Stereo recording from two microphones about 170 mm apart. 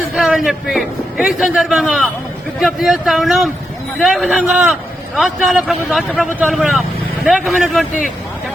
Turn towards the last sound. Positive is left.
turn(degrees=0)  # may be behind; listen again after turning